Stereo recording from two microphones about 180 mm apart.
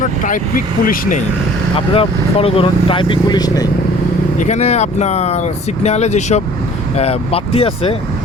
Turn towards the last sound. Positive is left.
turn(degrees=30)  # may be behind; listen again after turning